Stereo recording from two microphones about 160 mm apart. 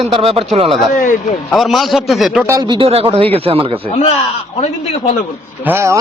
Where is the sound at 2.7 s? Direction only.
35° right (ahead or behind).